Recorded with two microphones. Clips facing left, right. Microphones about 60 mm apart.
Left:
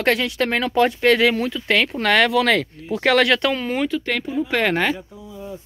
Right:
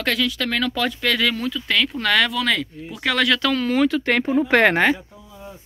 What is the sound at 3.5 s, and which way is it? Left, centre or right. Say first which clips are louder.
Speech: right 3 dB; centre.